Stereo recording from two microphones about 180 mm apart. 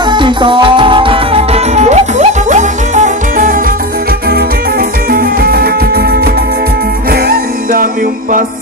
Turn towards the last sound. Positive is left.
turn(degrees=-55)  # may be behind; listen again after turning